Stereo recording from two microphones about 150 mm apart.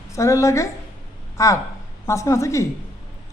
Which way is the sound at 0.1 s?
20° left (ahead or behind).